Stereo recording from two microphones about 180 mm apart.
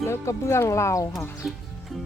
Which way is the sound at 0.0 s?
15° left (ahead or behind).